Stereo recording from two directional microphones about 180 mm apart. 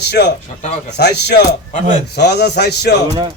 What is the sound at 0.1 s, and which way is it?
A man's voice, 70° left (ahead or behind).